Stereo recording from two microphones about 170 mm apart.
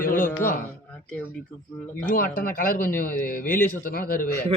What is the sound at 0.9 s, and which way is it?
Speech, 5° left (ahead or behind).